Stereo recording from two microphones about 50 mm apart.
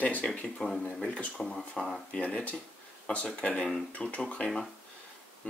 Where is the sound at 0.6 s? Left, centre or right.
Centre.